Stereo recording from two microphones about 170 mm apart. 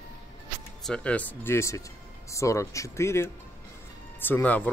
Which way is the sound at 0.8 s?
5° left (ahead or behind).